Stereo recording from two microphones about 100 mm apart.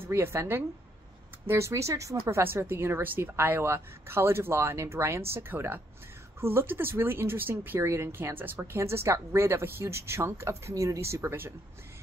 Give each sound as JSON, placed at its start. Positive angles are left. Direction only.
{"t": 0.0, "sound": "speech", "side_deg": -25}